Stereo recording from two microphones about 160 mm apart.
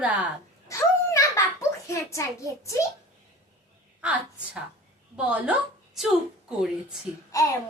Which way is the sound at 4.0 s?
5° right (ahead or behind).